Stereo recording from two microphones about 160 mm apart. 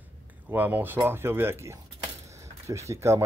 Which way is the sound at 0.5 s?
10° right (ahead or behind).